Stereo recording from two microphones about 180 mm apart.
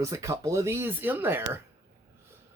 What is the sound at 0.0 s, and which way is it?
Speech, 15° right (ahead or behind).